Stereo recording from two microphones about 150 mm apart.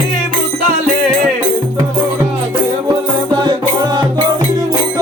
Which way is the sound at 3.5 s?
30° right (ahead or behind).